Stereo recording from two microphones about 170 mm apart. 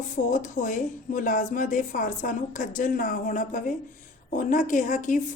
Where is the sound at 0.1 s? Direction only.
50° left (ahead or behind).